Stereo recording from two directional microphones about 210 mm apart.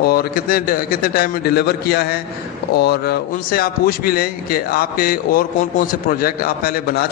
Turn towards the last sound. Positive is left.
turn(degrees=45)  # may be behind; listen again after turning